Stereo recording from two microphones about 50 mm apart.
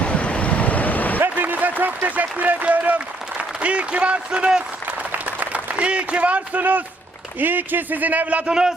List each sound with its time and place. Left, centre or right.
0.0 s vehicle: left
1.2 s a sound: right
2.0 s speech: right
2.6 s applause: right
3.3 s speech: right
5.1 s applause: right
5.7 s a man's voice: right